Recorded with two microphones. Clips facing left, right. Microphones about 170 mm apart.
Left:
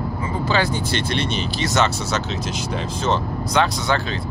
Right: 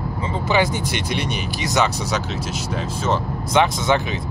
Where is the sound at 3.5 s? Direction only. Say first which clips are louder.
Right 3 dB; 20° right (ahead or behind).